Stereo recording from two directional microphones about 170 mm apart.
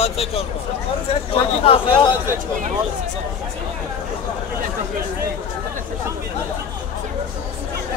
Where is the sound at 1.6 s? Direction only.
30° left (ahead or behind).